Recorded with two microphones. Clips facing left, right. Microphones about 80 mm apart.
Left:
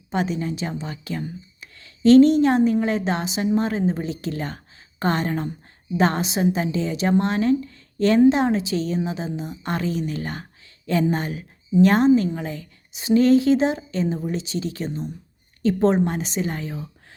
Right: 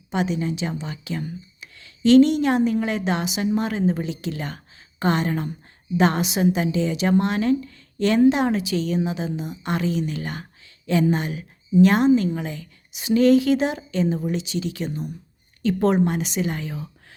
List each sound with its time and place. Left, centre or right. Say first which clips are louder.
0.1 s a woman's voice: even; left